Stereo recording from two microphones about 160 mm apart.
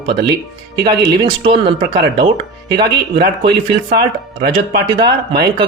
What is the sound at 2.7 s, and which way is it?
Speech, 30° right (ahead or behind).